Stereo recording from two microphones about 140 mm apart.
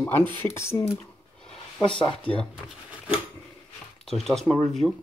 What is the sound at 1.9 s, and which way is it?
Speech, 40° left (ahead or behind).